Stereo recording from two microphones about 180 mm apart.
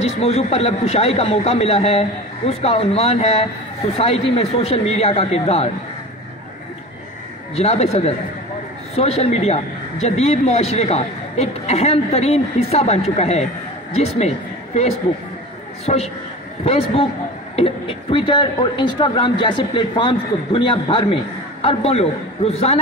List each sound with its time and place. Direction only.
0.0 s speech: 35° left (ahead or behind)
7.5 s a man's voice: 35° left (ahead or behind)